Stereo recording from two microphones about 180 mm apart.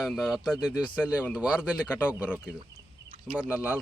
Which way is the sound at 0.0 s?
Centre (ahead or behind).